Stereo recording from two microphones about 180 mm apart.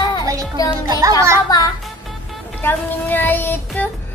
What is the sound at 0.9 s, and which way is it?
Speech, 20° right (ahead or behind).